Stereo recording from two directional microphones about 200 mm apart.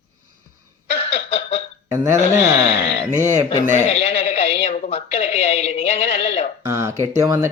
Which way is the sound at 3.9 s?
30° left (ahead or behind).